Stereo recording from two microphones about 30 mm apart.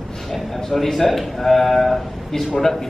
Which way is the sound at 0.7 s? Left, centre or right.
Centre.